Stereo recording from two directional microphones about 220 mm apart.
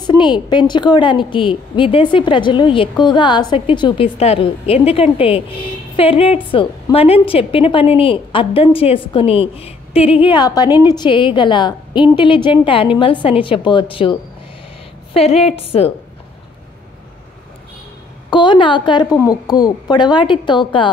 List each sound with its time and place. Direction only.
0.0 s a woman's voice: 20° left (ahead or behind)
10.7 s a woman's voice: 10° right (ahead or behind)
11.0 s a woman's voice: 20° left (ahead or behind)
15.1 s a woman's voice: 25° left (ahead or behind)
18.3 s a woman's voice: 20° left (ahead or behind)